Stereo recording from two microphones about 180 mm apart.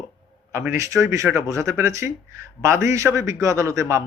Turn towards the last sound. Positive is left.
turn(degrees=-15)  # may be behind; listen again after turning